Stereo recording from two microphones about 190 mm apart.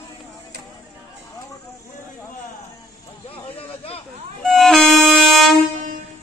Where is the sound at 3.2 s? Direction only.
30° left (ahead or behind).